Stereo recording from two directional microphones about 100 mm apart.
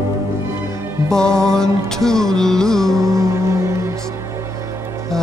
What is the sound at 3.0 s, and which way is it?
Music, 30° right (ahead or behind).